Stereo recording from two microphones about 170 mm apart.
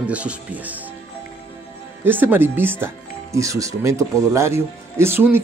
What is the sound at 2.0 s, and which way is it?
Speech, 10° right (ahead or behind).